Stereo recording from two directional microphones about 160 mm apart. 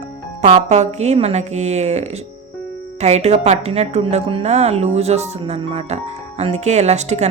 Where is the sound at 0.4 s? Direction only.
40° right (ahead or behind).